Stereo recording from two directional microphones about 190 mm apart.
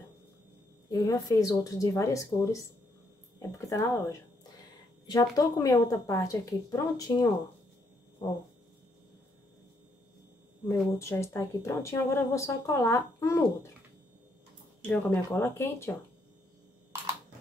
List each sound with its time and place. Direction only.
0.8 s speech: 20° left (ahead or behind)
10.7 s speech: 15° left (ahead or behind)
14.9 s speech: 10° left (ahead or behind)